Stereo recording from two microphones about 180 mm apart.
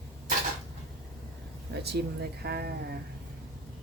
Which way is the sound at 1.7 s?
65° right (ahead or behind).